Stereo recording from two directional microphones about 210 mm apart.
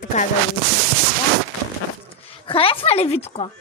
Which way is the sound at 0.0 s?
35° left (ahead or behind).